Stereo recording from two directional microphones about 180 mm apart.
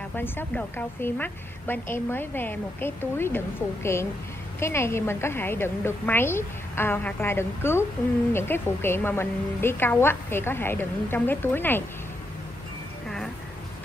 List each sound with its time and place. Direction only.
0.1 s a woman's voice: 10° left (ahead or behind)